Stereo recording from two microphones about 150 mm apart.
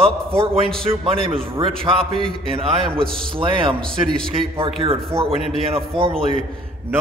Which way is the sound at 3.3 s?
35° right (ahead or behind).